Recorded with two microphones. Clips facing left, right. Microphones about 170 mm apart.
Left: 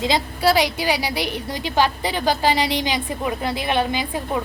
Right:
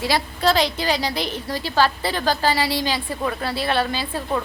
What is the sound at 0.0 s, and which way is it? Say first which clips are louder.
A woman's voice: left 1 dB; 15° left (ahead or behind).